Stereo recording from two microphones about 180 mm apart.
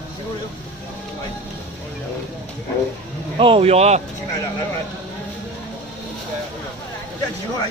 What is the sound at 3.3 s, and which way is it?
Speech, 30° right (ahead or behind).